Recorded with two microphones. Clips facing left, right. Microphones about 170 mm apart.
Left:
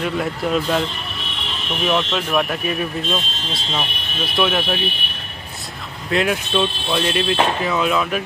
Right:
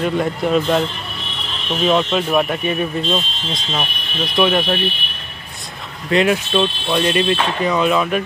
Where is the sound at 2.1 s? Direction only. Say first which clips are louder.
Right 3 dB; centre (ahead or behind).